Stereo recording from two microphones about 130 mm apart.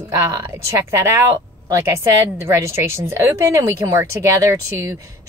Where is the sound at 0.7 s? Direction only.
20° right (ahead or behind).